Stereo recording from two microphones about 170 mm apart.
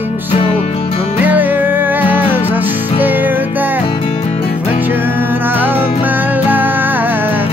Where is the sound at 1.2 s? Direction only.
10° right (ahead or behind).